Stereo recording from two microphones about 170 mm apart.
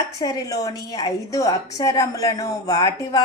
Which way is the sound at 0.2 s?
20° left (ahead or behind).